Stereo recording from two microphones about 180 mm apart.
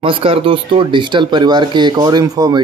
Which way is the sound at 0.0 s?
30° right (ahead or behind).